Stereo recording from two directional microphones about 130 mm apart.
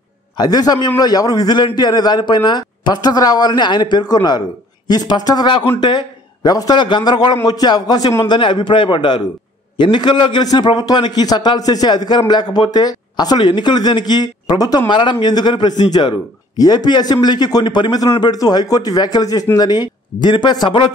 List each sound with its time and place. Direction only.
0.4 s a man's voice: 30° left (ahead or behind)
8.3 s a man's voice: 35° left (ahead or behind)